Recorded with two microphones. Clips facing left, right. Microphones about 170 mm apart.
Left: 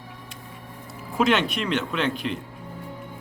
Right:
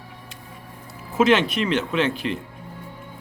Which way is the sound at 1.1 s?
Centre (ahead or behind).